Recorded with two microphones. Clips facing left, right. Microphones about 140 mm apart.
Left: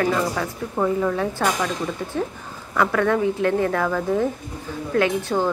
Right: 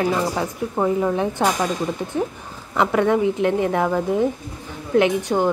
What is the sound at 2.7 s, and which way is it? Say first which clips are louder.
A woman's voice: right 2 dB; 20° right (ahead or behind).